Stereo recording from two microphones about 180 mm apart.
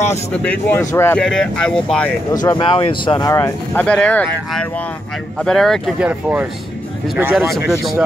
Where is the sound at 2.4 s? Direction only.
25° left (ahead or behind); by 7.6 s centre (ahead or behind).